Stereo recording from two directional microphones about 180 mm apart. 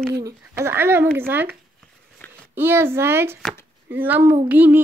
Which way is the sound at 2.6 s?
10° right (ahead or behind).